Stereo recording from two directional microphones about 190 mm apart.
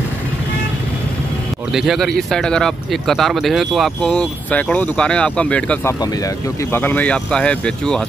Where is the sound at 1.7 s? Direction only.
Centre (ahead or behind).